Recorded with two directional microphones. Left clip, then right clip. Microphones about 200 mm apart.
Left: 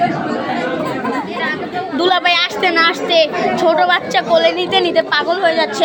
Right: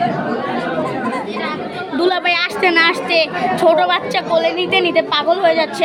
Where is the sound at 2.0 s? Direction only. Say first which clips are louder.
Left 2 dB; 5° right (ahead or behind).